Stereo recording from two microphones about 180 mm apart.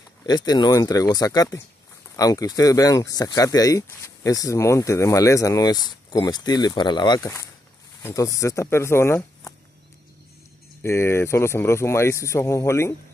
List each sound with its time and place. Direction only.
0.3 s speech: 20° left (ahead or behind)
10.8 s speech: 15° left (ahead or behind)